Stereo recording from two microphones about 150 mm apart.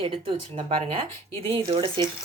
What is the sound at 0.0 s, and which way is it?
Speech, 35° right (ahead or behind).